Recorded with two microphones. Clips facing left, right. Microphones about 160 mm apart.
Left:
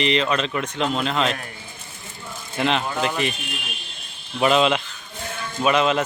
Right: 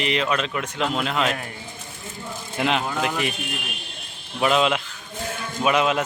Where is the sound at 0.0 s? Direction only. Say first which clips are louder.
Left 2 dB; 5° right (ahead or behind).